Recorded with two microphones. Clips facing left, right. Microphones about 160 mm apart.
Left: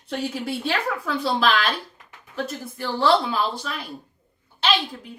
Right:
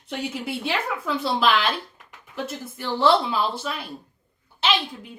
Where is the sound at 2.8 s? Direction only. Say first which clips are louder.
Even; centre (ahead or behind).